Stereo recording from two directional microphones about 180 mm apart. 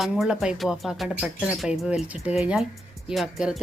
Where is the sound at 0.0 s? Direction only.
Centre (ahead or behind).